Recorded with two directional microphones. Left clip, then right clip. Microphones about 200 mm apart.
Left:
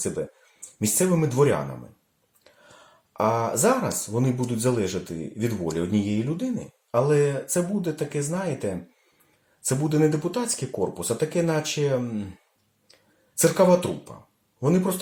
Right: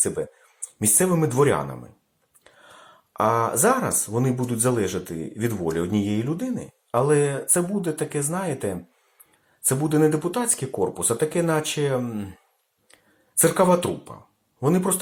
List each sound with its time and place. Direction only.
0.2 s speech: 15° right (ahead or behind)
13.4 s speech: 15° right (ahead or behind)